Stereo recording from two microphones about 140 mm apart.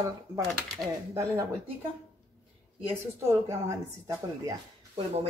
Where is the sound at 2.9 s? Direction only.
20° right (ahead or behind).